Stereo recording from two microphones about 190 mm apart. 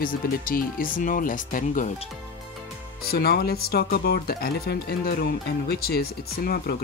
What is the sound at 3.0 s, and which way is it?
Speech, 55° left (ahead or behind).